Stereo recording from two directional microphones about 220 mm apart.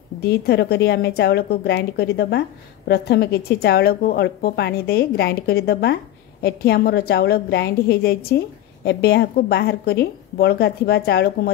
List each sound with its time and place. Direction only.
0.2 s a woman's voice: 50° left (ahead or behind)